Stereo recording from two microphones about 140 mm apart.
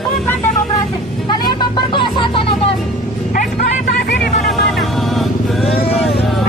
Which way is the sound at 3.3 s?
85° left.